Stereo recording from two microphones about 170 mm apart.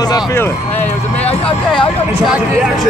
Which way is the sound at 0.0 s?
20° left (ahead or behind).